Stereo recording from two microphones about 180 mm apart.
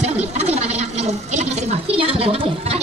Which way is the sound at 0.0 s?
35° right (ahead or behind).